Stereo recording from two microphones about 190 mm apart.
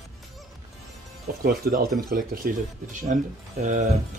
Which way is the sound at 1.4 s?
50° right (ahead or behind).